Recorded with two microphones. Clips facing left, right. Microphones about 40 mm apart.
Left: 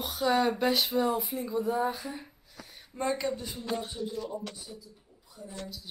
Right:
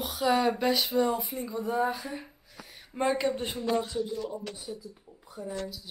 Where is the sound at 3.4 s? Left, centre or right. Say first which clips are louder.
Right 6 dB; right.